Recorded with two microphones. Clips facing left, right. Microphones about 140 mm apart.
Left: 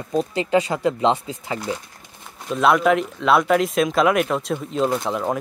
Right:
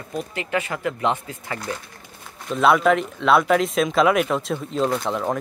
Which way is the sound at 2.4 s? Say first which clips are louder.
Even; centre (ahead or behind).